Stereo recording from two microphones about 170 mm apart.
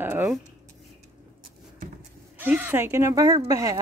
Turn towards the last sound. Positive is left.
turn(degrees=-20)  # may be behind; listen again after turning